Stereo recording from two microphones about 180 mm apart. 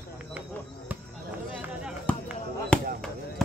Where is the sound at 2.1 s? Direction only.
5° left (ahead or behind).